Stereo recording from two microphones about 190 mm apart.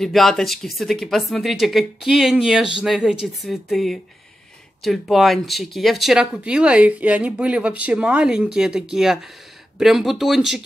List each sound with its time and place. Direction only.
0.0 s speech: centre (ahead or behind)